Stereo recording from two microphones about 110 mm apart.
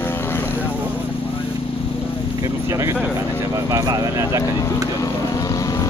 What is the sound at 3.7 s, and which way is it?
Speech, 30° right (ahead or behind).